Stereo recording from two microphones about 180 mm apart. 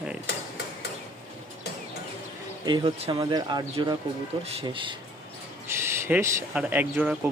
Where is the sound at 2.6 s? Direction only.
25° right (ahead or behind).